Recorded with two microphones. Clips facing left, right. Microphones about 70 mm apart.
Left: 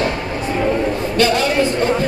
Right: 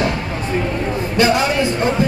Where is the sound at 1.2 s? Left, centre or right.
Centre.